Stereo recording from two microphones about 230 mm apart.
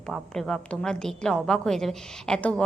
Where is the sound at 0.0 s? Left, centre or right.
Centre.